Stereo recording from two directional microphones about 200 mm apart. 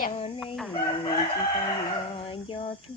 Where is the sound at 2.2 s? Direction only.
30° left (ahead or behind).